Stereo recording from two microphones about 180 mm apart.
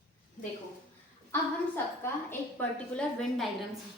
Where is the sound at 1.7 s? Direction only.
10° left (ahead or behind).